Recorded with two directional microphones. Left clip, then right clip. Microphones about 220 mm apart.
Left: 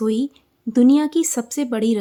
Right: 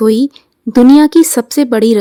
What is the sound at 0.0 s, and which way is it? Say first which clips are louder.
A woman's voice: right 11 dB; 40° right (ahead or behind).